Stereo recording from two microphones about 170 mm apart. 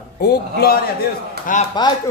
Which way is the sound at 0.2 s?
65° left (ahead or behind).